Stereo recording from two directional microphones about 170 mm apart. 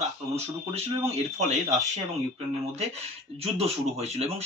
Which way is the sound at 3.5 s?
35° right (ahead or behind).